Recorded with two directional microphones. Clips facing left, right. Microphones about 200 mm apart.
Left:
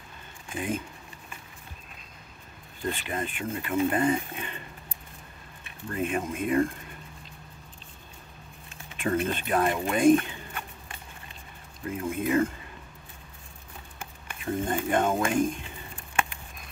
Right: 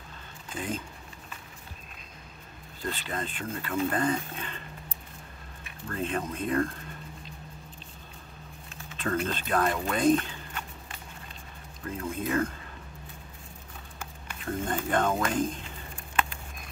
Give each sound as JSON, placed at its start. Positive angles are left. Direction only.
{"t": 0.5, "sound": "speech", "side_deg": 15}
{"t": 2.8, "sound": "speech", "side_deg": 15}
{"t": 5.9, "sound": "speech", "side_deg": 10}
{"t": 8.9, "sound": "speech", "side_deg": 15}
{"t": 11.8, "sound": "speech", "side_deg": 15}
{"t": 14.4, "sound": "speech", "side_deg": 20}